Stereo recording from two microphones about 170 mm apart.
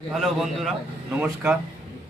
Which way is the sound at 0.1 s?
Centre (ahead or behind).